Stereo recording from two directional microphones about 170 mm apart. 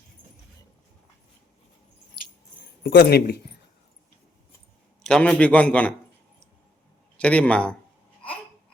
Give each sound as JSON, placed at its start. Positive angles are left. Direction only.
{"t": 2.8, "sound": "speech", "side_deg": 75}
{"t": 5.0, "sound": "a man's voice", "side_deg": 5}
{"t": 7.2, "sound": "a man's voice", "side_deg": 5}